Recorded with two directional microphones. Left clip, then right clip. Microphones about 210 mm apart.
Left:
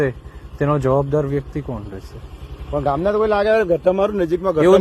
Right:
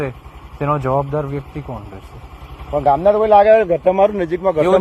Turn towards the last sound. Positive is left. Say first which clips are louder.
# even
turn(degrees=40)  # may be behind; listen again after turning